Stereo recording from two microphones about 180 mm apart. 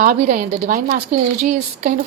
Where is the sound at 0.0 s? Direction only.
50° right (ahead or behind).